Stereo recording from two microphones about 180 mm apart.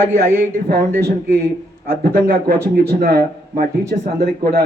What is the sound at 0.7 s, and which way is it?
Speech, 60° right (ahead or behind).